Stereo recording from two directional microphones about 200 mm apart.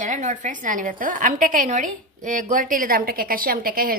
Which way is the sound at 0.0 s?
40° right (ahead or behind).